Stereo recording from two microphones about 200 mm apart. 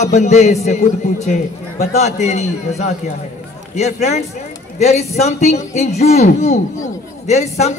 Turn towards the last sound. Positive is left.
turn(degrees=35)  # may be behind; listen again after turning